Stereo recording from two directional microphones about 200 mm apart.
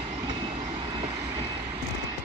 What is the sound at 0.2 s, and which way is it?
Train, 20° right (ahead or behind).